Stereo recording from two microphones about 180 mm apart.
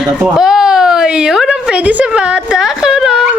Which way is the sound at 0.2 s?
5° right (ahead or behind).